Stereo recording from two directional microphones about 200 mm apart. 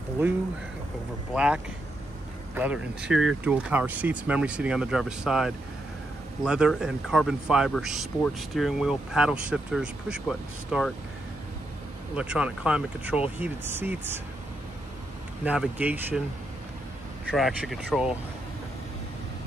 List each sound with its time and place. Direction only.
1.3 s speech: 5° right (ahead or behind)
12.2 s speech: 5° right (ahead or behind)
15.4 s speech: 5° right (ahead or behind)
17.3 s speech: centre (ahead or behind)